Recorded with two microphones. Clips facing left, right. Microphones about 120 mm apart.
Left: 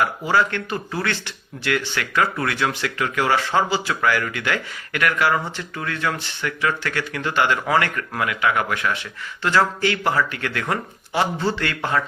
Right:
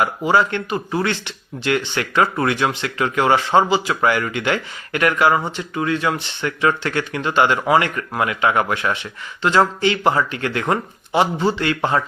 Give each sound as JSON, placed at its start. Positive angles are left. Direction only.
{"t": 0.0, "sound": "speech", "side_deg": -20}